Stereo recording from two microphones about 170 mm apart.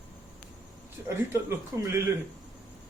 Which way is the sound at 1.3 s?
15° right (ahead or behind).